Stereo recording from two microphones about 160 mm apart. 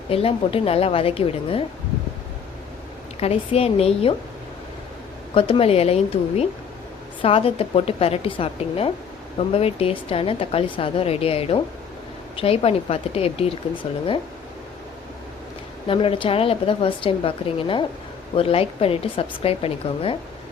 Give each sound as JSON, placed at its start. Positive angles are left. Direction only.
{"t": 0.1, "sound": "a woman's voice", "side_deg": 35}
{"t": 3.2, "sound": "a woman's voice", "side_deg": 40}
{"t": 5.3, "sound": "a woman's voice", "side_deg": 35}
{"t": 15.9, "sound": "a woman's voice", "side_deg": 35}